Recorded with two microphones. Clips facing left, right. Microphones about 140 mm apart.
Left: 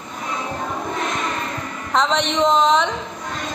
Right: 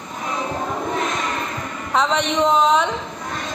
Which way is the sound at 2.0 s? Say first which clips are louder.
Even; 10° right (ahead or behind).